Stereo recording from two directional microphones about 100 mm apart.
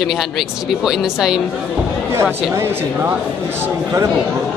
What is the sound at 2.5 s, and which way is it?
Speech, 25° right (ahead or behind).